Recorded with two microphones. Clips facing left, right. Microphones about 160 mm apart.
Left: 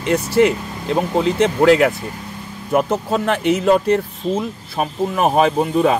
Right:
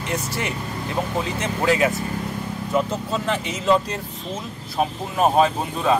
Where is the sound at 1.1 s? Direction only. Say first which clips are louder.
Left 9 dB; 70° left (ahead or behind).